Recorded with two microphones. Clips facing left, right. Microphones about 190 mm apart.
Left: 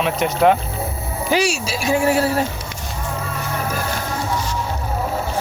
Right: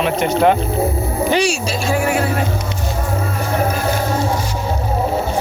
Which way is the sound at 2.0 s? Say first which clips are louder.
Left 3 dB; 35° left (ahead or behind).